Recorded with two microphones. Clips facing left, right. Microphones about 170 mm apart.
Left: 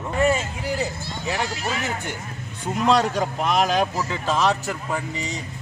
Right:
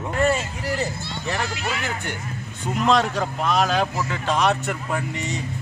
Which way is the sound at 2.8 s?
10° left (ahead or behind).